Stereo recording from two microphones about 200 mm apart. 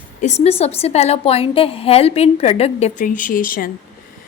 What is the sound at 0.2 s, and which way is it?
A woman's voice, 35° left (ahead or behind).